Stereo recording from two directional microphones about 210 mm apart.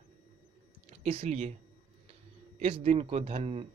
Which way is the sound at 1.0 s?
30° right (ahead or behind).